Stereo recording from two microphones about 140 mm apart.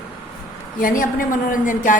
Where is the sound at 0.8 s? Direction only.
75° left (ahead or behind).